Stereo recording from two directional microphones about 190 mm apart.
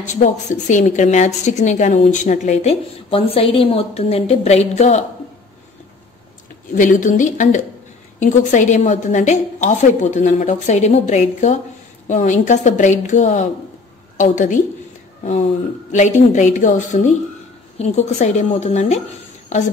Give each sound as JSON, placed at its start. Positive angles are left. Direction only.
{"t": 0.0, "sound": "a woman's voice", "side_deg": 40}
{"t": 6.7, "sound": "a woman's voice", "side_deg": 45}
{"t": 15.9, "sound": "a woman's voice", "side_deg": 40}